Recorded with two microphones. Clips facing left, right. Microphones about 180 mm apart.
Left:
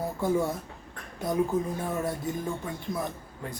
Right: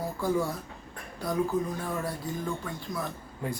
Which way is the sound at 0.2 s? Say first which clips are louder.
Left 2 dB; 20° left (ahead or behind).